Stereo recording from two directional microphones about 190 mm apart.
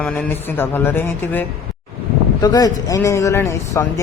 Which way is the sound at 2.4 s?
20° left (ahead or behind).